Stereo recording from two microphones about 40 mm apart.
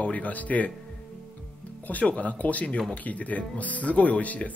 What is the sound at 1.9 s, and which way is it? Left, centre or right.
Speech, left.